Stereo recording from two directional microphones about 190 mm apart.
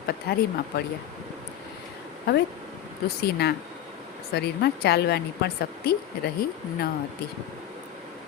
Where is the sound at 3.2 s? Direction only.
60° left (ahead or behind).